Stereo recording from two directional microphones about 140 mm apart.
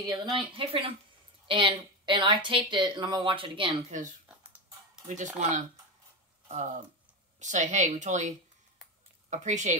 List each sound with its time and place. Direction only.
0.0 s speech: 30° right (ahead or behind)
3.9 s speech: 65° right (ahead or behind)
4.3 s a sound: 5° right (ahead or behind)
5.0 s speech: 60° right (ahead or behind)
9.3 s speech: 60° right (ahead or behind)